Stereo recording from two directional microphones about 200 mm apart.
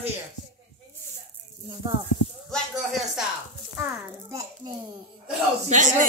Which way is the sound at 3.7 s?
15° right (ahead or behind).